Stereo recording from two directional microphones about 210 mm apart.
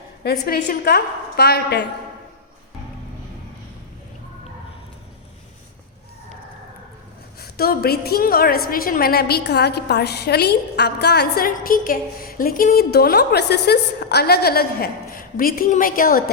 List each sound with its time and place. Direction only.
0.2 s a woman's voice: 50° left (ahead or behind)
7.3 s a woman's voice: 45° left (ahead or behind)